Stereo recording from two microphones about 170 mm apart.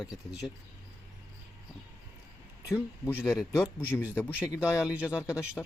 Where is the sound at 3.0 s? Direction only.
15° left (ahead or behind).